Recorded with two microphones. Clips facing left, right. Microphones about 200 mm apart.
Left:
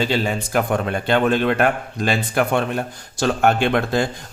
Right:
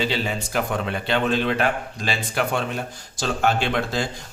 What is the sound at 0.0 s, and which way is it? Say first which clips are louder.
A man's voice: left 4 dB; 50° left (ahead or behind).